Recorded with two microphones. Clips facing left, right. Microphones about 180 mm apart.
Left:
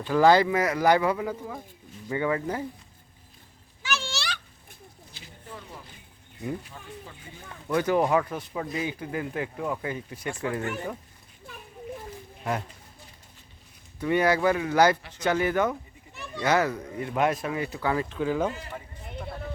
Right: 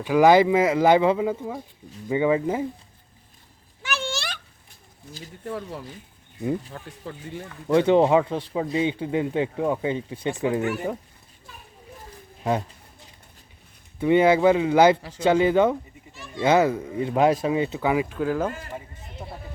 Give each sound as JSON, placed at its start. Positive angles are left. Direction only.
{"t": 0.0, "sound": "speech", "side_deg": -15}
{"t": 3.8, "sound": "a sound", "side_deg": -55}
{"t": 5.5, "sound": "speech", "side_deg": -70}
{"t": 7.7, "sound": "speech", "side_deg": -25}
{"t": 14.0, "sound": "speech", "side_deg": -20}